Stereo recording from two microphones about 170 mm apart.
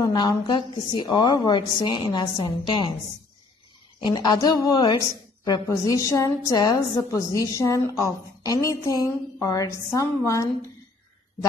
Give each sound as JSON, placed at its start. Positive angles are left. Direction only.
{"t": 0.0, "sound": "a woman's voice", "side_deg": 25}
{"t": 4.0, "sound": "a woman's voice", "side_deg": 25}